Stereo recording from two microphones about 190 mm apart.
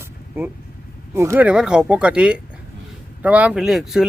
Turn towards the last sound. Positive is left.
turn(degrees=0)  # may be behind; listen again after turning